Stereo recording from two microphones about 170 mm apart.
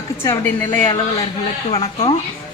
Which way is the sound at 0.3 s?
10° left (ahead or behind).